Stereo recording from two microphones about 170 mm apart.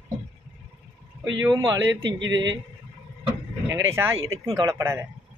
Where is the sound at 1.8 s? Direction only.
90° right.